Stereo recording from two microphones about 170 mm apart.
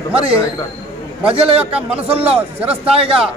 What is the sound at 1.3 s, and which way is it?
A man's voice, 35° right (ahead or behind).